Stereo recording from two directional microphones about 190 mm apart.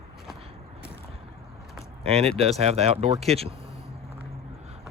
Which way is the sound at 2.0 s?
30° right (ahead or behind).